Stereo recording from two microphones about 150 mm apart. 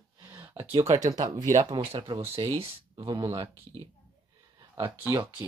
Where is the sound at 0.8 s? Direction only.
50° right (ahead or behind).